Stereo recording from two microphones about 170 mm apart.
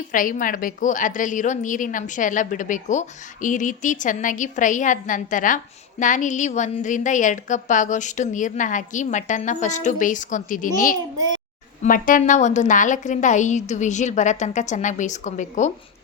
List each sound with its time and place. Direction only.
0.1 s a woman's voice: 50° left (ahead or behind)
11.8 s a woman's voice: 55° left (ahead or behind)